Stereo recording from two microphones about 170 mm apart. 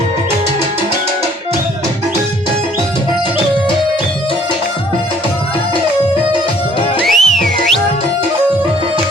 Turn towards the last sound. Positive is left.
turn(degrees=0)  # may be behind; listen again after turning